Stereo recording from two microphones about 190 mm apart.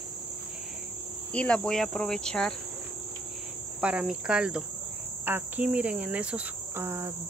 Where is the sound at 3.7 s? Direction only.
5° right (ahead or behind).